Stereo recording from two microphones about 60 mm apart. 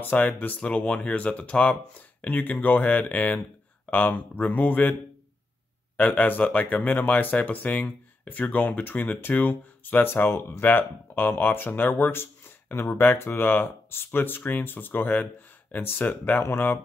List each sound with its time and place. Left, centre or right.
0.0 s speech: left
5.9 s speech: left